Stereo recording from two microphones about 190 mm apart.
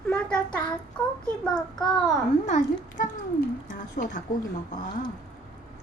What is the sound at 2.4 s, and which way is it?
A woman's voice, 40° left (ahead or behind).